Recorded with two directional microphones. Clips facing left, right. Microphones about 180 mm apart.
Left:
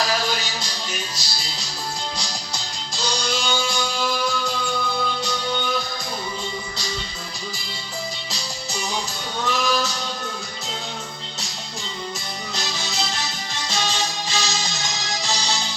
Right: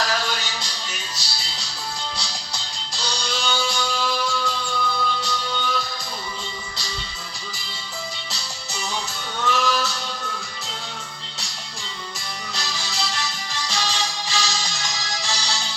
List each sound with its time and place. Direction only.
0.0 s music: 10° left (ahead or behind)
2.6 s music: 45° left (ahead or behind)
3.3 s music: 15° left (ahead or behind)
8.3 s music: 15° left (ahead or behind)
12.5 s music: 20° left (ahead or behind)